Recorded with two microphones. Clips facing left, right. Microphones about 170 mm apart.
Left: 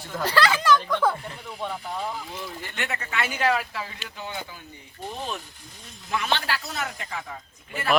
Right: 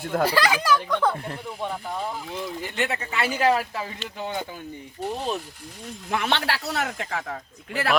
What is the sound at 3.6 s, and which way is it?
Speech, 20° right (ahead or behind).